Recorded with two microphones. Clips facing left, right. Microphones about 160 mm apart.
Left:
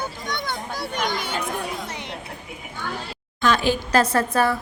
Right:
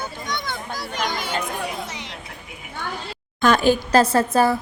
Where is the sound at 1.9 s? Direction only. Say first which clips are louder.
Left 2 dB; 55° left (ahead or behind).